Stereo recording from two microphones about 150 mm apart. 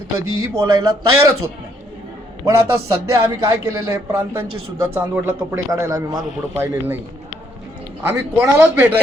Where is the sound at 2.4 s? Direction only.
20° right (ahead or behind).